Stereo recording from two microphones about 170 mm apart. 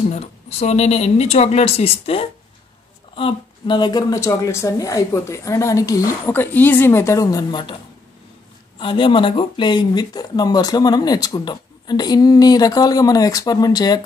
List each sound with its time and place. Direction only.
0.1 s speech: 40° left (ahead or behind); by 7.7 s 25° left (ahead or behind)
8.7 s speech: 30° left (ahead or behind)